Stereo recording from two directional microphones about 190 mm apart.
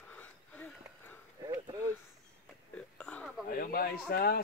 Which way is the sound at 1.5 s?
15° right (ahead or behind).